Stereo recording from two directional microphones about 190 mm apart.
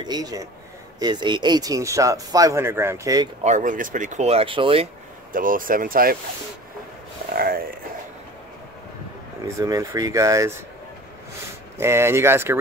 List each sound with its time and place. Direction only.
0.0 s speech: 20° right (ahead or behind)
3.4 s speech: 40° right (ahead or behind)
5.3 s speech: 45° right (ahead or behind)
7.3 s speech: 50° right (ahead or behind)
9.6 s speech: 15° right (ahead or behind)
11.8 s speech: 15° right (ahead or behind)